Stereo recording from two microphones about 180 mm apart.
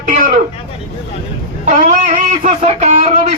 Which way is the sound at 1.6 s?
45° right (ahead or behind).